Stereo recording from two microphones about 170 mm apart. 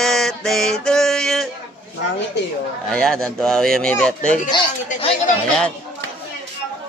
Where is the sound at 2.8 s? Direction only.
5° left (ahead or behind).